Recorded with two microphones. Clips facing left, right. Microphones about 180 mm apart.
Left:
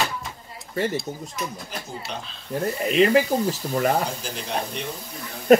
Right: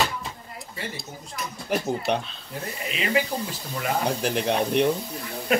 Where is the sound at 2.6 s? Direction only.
45° left (ahead or behind).